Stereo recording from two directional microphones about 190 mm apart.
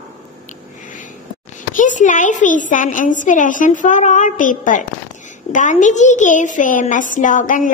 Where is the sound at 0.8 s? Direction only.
45° left (ahead or behind).